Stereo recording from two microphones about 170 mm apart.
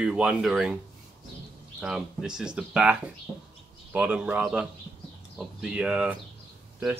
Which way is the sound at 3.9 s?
10° right (ahead or behind).